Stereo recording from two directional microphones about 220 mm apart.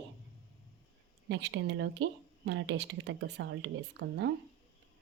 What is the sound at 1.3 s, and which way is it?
Speech, 55° right (ahead or behind).